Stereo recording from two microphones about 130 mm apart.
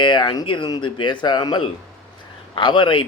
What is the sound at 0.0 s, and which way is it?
Speech, 35° left (ahead or behind).